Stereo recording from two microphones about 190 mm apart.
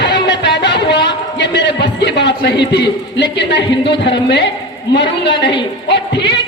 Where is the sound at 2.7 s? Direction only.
65° left (ahead or behind).